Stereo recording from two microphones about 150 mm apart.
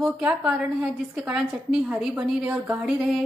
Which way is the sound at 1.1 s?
5° right (ahead or behind).